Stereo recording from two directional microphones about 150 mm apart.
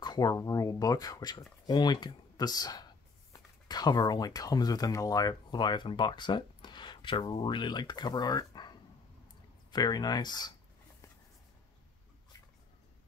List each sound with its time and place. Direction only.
0.0 s speech: 25° left (ahead or behind)